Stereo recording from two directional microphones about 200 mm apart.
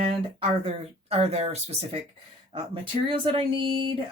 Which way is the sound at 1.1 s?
30° right (ahead or behind).